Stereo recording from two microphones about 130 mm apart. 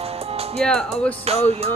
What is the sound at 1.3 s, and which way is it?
Music, 50° right (ahead or behind).